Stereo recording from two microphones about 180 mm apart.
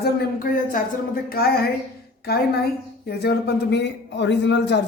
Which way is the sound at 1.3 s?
60° left (ahead or behind).